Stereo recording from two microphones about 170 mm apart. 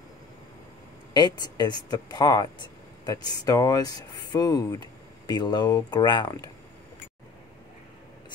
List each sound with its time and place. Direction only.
1.1 s speech: 25° left (ahead or behind)